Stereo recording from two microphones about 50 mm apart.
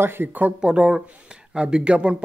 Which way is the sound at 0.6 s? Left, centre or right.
Centre.